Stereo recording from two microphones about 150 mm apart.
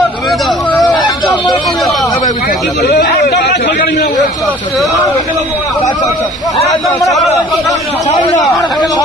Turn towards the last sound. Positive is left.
turn(degrees=0)  # may be behind; listen again after turning